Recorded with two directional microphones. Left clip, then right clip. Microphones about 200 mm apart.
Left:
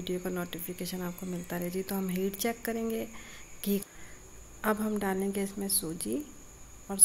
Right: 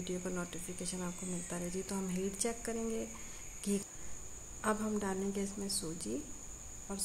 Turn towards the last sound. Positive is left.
turn(degrees=25)  # may be behind; listen again after turning